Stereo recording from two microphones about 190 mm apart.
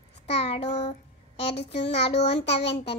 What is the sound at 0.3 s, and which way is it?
Child singing, 30° left (ahead or behind).